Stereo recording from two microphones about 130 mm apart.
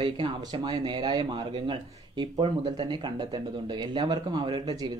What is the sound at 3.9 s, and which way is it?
Speech, 35° right (ahead or behind).